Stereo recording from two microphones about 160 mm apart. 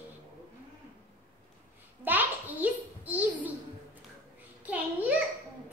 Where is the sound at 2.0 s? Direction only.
10° right (ahead or behind).